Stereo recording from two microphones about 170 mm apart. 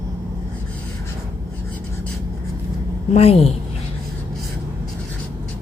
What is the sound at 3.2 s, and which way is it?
Speech, 35° left (ahead or behind).